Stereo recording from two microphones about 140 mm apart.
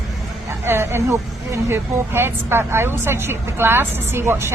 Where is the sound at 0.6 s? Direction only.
15° right (ahead or behind).